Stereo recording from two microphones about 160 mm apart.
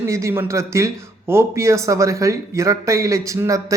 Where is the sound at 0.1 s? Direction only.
15° right (ahead or behind).